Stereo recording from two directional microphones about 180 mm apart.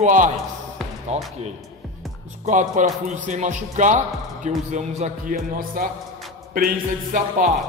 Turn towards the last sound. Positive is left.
turn(degrees=-50)  # may be behind; listen again after turning